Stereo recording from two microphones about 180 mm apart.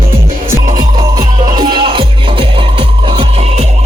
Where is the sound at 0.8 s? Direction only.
20° right (ahead or behind).